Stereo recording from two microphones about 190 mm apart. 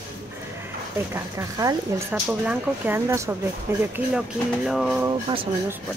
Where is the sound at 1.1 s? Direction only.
15° right (ahead or behind).